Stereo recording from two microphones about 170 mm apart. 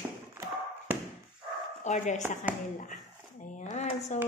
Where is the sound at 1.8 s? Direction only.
45° left (ahead or behind).